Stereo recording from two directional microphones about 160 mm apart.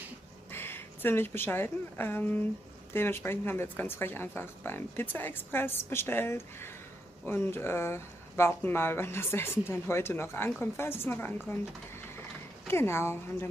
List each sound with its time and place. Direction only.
0.5 s a woman's voice: 15° left (ahead or behind)
12.6 s speech: 15° left (ahead or behind)